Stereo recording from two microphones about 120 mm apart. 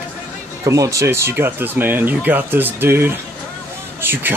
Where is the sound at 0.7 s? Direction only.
25° right (ahead or behind).